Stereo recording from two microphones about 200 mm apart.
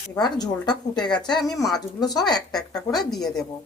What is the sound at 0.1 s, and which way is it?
A woman's voice, 20° left (ahead or behind).